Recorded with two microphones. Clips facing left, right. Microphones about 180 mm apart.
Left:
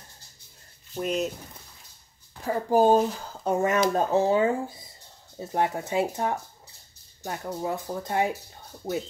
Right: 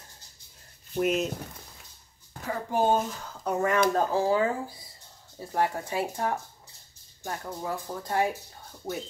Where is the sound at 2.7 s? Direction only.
35° left (ahead or behind).